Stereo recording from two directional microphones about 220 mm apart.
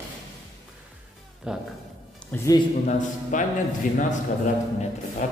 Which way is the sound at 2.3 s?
15° left (ahead or behind).